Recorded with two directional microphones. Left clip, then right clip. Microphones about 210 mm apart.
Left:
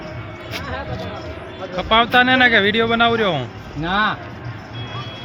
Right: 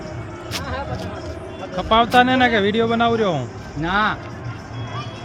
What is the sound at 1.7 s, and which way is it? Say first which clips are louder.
Speech: even; 15° right (ahead or behind).